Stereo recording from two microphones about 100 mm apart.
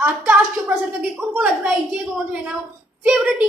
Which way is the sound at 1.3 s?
5° right (ahead or behind).